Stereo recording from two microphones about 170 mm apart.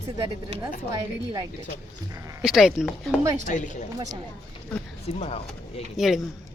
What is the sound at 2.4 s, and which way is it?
Speech, centre (ahead or behind).